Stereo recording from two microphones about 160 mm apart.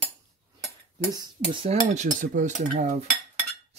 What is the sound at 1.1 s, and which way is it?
Speech, 30° right (ahead or behind).